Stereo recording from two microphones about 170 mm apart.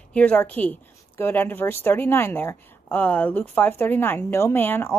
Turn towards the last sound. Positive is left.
turn(degrees=10)  # may be behind; listen again after turning